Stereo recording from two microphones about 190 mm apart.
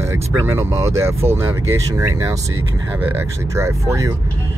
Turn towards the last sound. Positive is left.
turn(degrees=-15)  # may be behind; listen again after turning